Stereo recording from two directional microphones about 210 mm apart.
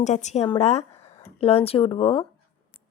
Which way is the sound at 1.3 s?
30° left (ahead or behind).